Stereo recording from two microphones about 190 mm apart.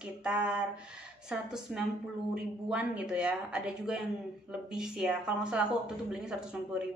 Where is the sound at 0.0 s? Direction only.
5° right (ahead or behind).